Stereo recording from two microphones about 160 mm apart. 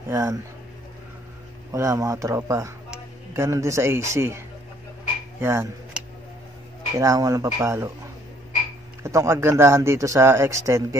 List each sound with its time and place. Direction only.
0.1 s speech: 20° right (ahead or behind)
1.7 s speech: 20° right (ahead or behind)
5.4 s speech: 15° right (ahead or behind)
9.0 s speech: 15° right (ahead or behind)